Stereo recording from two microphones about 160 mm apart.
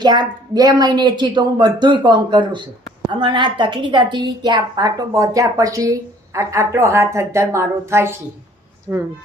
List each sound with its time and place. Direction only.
0.0 s a woman's voice: 25° right (ahead or behind)